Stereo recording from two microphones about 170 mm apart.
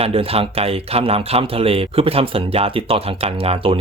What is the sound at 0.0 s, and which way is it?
Speech, 35° right (ahead or behind).